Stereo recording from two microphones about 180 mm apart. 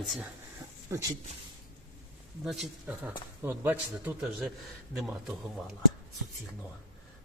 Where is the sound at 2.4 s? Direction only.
Centre (ahead or behind).